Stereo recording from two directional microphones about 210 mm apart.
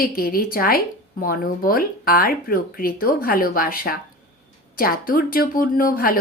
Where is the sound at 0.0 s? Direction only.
45° left (ahead or behind).